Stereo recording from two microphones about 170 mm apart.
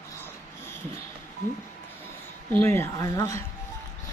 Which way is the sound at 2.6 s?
15° left (ahead or behind).